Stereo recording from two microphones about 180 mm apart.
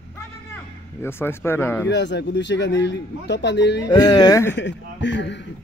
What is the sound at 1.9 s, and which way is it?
A man's voice, 75° left (ahead or behind).